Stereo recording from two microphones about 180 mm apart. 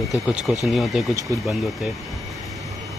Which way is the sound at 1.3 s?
20° right (ahead or behind).